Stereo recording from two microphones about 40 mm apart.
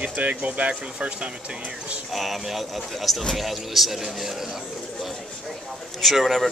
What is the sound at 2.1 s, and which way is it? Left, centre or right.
Speech, centre.